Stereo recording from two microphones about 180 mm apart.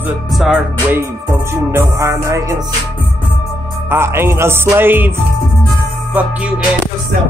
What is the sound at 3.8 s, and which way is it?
Music, 15° right (ahead or behind).